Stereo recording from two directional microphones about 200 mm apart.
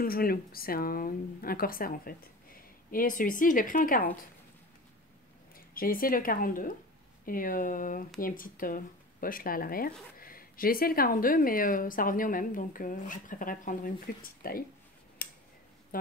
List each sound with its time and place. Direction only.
0.0 s speech: 45° left (ahead or behind)
5.8 s speech: 45° left (ahead or behind)
15.9 s speech: 45° left (ahead or behind)